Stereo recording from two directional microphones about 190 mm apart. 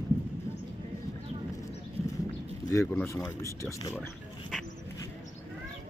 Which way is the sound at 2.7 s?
15° left (ahead or behind).